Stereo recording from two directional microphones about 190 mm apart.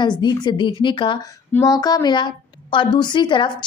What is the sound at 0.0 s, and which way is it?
A woman's voice, 25° left (ahead or behind).